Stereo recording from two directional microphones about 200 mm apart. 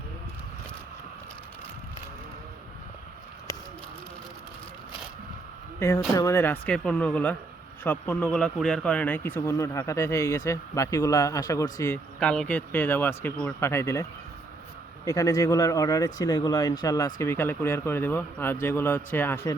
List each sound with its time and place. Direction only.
6.1 s speech: 10° left (ahead or behind)
12.2 s speech: 5° left (ahead or behind)